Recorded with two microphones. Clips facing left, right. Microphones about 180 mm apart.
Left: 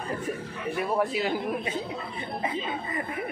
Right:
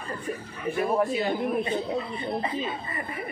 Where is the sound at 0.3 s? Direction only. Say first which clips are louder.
Even; 10° left (ahead or behind).